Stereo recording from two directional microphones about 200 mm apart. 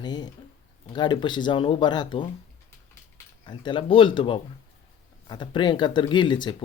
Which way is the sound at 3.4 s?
25° left (ahead or behind).